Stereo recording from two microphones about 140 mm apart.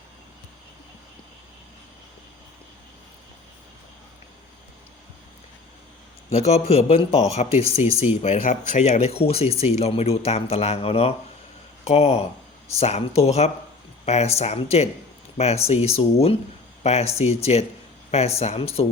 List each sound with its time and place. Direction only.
6.3 s speech: 50° left (ahead or behind)